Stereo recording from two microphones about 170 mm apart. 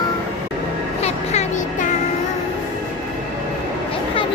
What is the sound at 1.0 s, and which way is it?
Music, 40° left (ahead or behind).